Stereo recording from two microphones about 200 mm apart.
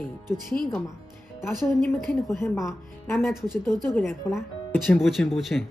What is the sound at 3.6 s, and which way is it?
Speech, 20° right (ahead or behind).